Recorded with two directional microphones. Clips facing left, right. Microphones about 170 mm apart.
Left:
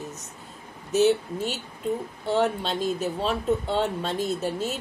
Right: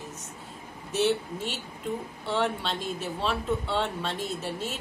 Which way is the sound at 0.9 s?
40° left (ahead or behind).